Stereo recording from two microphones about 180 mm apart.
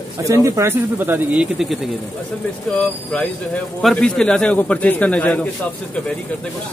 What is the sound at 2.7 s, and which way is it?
Speech, 5° left (ahead or behind).